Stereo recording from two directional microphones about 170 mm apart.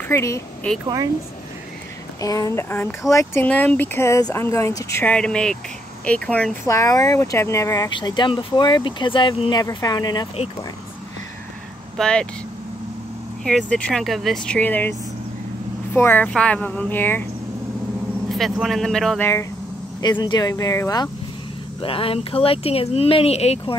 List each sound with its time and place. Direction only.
0.1 s speech: 15° left (ahead or behind)
0.7 s speech: 5° left (ahead or behind)
2.2 s speech: 20° left (ahead or behind)
12.0 s speech: 5° left (ahead or behind)
13.4 s speech: 5° left (ahead or behind)
18.3 s speech: centre (ahead or behind)
20.0 s speech: 25° left (ahead or behind)
21.8 s speech: 35° left (ahead or behind)